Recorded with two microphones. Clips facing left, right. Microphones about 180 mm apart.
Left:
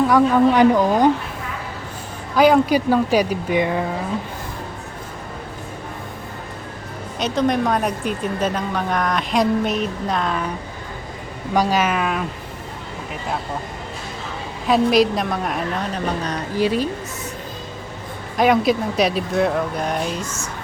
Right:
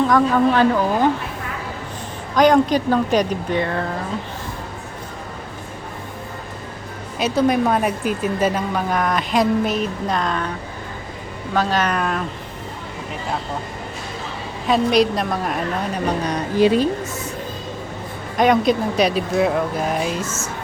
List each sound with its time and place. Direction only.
0.1 s speech: 15° left (ahead or behind)
2.3 s speech: 5° left (ahead or behind)
7.2 s a woman's voice: 5° right (ahead or behind)
11.5 s speech: 10° left (ahead or behind)
14.7 s a woman's voice: centre (ahead or behind)
16.2 s speech: 15° right (ahead or behind)
18.3 s a woman's voice: centre (ahead or behind)